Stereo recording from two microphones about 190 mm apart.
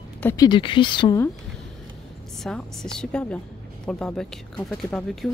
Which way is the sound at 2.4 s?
5° left (ahead or behind).